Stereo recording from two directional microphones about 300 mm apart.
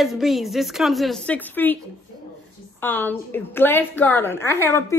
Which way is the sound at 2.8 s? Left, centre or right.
Centre.